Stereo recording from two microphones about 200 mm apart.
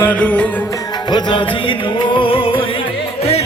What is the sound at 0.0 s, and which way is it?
Music, 5° left (ahead or behind).